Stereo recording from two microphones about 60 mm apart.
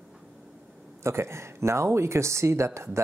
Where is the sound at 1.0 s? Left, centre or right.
Right.